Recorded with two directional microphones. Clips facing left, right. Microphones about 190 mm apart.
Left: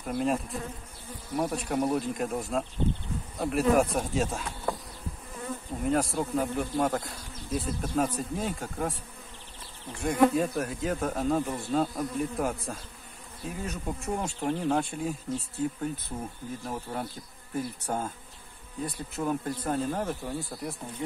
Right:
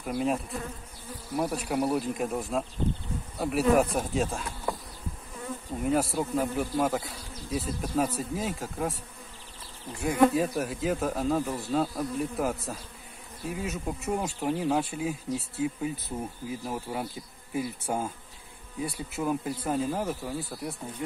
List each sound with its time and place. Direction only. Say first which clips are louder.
0.0 s bee: even; 5° right (ahead or behind)
1.3 s speech: even; 5° right (ahead or behind)
5.9 s speech: right 1 dB; 5° right (ahead or behind)
10.0 s speech: right 1 dB; 5° right (ahead or behind)
16.4 s bee: right 2 dB; 5° right (ahead or behind)